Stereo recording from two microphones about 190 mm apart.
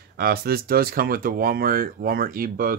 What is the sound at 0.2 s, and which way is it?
Speech, 55° right (ahead or behind).